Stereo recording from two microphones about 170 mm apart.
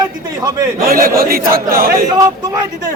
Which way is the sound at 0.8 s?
60° right (ahead or behind).